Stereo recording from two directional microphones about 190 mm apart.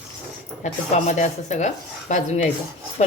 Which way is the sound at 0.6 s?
40° left (ahead or behind).